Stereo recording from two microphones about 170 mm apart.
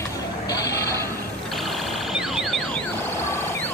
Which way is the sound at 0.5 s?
20° left (ahead or behind).